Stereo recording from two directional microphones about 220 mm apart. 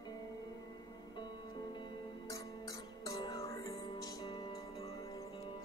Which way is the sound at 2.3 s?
15° left (ahead or behind).